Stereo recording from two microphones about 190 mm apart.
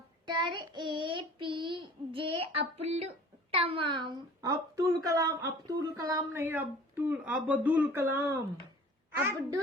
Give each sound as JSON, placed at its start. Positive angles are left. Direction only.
{"t": 0.3, "sound": "child singing", "side_deg": -25}
{"t": 3.5, "sound": "speech", "side_deg": -30}